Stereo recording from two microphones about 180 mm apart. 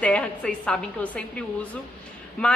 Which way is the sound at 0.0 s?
5° left (ahead or behind).